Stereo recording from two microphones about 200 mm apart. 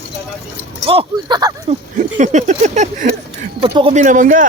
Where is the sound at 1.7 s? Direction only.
35° right (ahead or behind).